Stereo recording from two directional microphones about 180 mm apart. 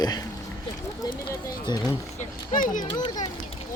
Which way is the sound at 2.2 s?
45° left (ahead or behind).